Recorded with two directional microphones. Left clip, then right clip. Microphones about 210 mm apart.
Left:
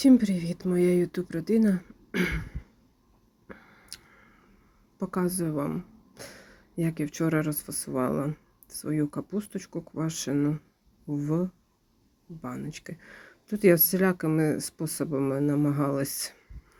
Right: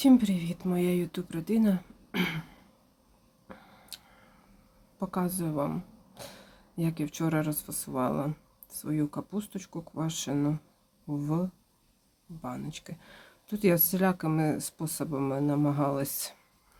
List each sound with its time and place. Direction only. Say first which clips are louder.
0.0 s speech: left 2 dB; 5° left (ahead or behind)
3.4 s a sound: left 2 dB; 5° left (ahead or behind)
4.9 s a woman's voice: left 3 dB; 5° left (ahead or behind)